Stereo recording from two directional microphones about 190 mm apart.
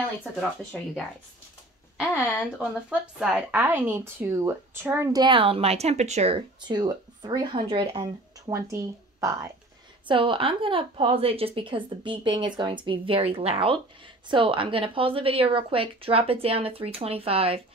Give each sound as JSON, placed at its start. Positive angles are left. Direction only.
{"t": 0.2, "sound": "speech", "side_deg": 0}
{"t": 2.9, "sound": "speech", "side_deg": -5}
{"t": 8.5, "sound": "speech", "side_deg": -15}
{"t": 10.0, "sound": "speech", "side_deg": -25}